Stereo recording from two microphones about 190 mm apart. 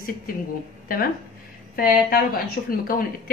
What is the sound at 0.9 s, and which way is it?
A woman's voice, 50° left (ahead or behind).